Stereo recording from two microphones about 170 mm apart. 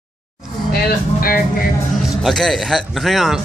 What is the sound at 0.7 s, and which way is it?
Speech, 60° left (ahead or behind).